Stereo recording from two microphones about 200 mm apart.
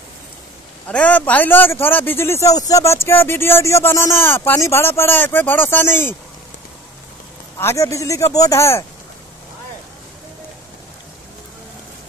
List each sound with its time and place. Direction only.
0.8 s speech: 5° left (ahead or behind)
7.5 s speech: 15° left (ahead or behind)